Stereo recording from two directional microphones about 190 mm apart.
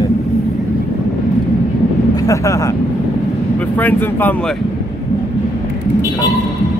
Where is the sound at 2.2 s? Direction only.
15° left (ahead or behind).